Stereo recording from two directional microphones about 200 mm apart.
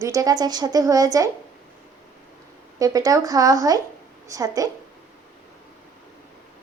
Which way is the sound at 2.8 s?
15° right (ahead or behind).